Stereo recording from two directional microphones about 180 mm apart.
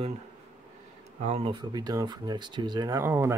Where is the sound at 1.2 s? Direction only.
30° right (ahead or behind).